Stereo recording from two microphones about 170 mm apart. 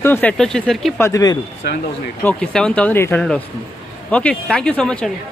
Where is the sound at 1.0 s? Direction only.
20° left (ahead or behind).